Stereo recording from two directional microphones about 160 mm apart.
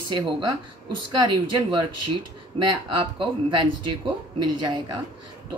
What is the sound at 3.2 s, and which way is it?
Speech, 30° right (ahead or behind).